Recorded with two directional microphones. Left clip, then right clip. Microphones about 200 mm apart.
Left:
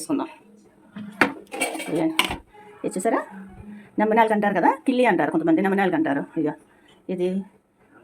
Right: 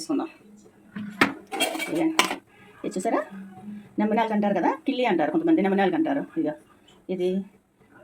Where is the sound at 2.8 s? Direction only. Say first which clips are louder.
Left 3 dB; 25° left (ahead or behind).